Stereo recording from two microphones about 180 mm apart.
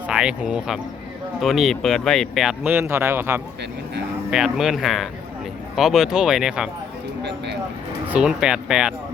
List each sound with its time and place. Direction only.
0.1 s speech: 5° right (ahead or behind)
7.3 s speech: 70° right (ahead or behind)
8.0 s speech: 5° right (ahead or behind)